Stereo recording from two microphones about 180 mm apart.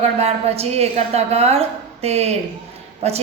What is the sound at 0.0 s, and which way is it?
A woman's voice, 35° right (ahead or behind).